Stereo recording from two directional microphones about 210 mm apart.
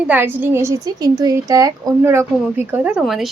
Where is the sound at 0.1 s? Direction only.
10° right (ahead or behind).